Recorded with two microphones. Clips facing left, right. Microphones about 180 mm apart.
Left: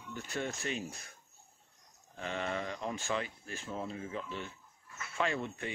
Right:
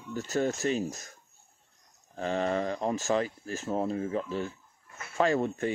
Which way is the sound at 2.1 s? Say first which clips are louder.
Right 8 dB; 35° right (ahead or behind).